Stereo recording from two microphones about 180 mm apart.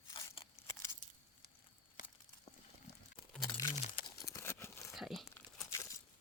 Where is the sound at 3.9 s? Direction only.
20° left (ahead or behind).